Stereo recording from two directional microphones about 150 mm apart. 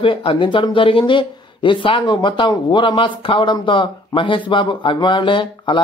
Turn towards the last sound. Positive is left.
turn(degrees=35)  # may be behind; listen again after turning